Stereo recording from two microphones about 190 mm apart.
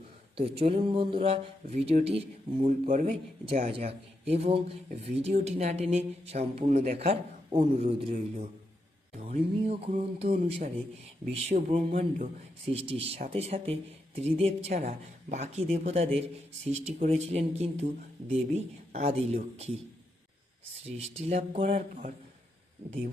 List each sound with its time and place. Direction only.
0.3 s speech: 30° right (ahead or behind)
2.6 s speech: 40° right (ahead or behind)
20.8 s speech: 35° right (ahead or behind)